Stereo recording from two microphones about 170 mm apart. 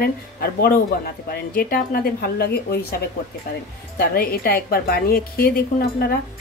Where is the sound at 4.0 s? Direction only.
65° left (ahead or behind).